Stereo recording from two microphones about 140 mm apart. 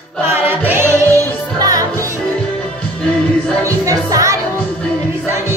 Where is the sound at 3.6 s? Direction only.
25° right (ahead or behind).